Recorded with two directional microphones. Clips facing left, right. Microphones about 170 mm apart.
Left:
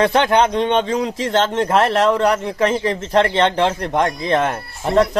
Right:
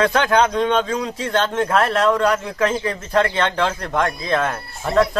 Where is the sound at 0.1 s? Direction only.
20° left (ahead or behind).